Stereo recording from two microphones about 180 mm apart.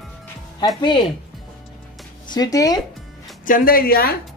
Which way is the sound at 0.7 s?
25° left (ahead or behind).